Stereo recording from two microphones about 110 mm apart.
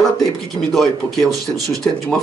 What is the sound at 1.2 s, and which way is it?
Speech, 30° right (ahead or behind).